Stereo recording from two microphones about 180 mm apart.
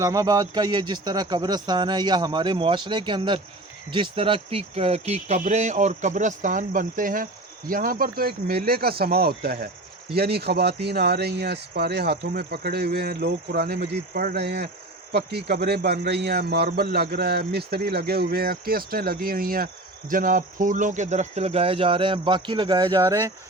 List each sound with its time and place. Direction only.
0.0 s a man's voice: 20° right (ahead or behind)